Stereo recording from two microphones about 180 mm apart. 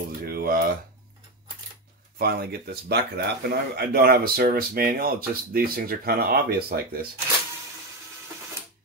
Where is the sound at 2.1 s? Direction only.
60° right (ahead or behind).